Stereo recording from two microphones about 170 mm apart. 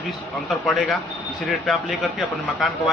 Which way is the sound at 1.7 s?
Centre (ahead or behind).